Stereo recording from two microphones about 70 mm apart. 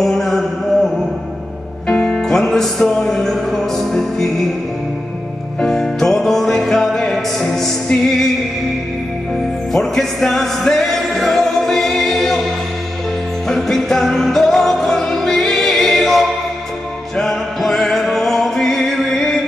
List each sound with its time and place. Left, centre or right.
0.0 s a sound: centre
1.9 s music: centre
5.6 s music: centre
9.3 s music: centre
13.5 s music: centre